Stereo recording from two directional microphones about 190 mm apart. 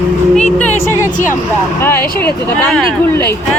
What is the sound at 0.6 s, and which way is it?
Speech, 10° left (ahead or behind).